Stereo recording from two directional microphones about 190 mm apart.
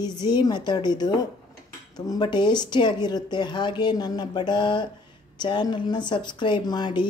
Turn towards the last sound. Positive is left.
turn(degrees=25)  # may be behind; listen again after turning